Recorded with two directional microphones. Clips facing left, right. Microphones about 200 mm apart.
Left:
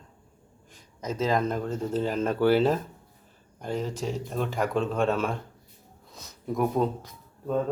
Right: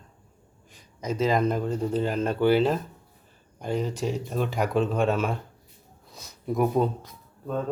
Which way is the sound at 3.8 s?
Centre (ahead or behind).